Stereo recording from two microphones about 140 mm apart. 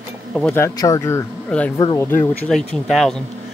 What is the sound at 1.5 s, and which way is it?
Speech, 10° left (ahead or behind).